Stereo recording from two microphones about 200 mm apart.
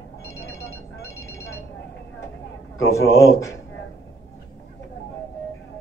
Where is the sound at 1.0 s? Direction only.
15° left (ahead or behind).